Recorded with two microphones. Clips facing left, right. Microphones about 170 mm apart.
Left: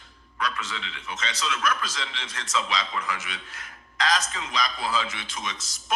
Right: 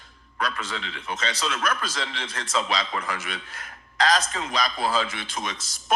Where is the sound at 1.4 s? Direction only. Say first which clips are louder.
Left 2 dB; 45° right (ahead or behind).